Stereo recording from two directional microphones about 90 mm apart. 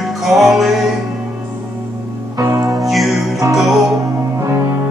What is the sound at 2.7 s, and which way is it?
Music, centre (ahead or behind).